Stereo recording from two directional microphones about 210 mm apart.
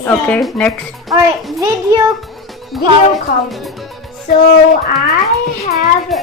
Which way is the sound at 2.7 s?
Centre (ahead or behind).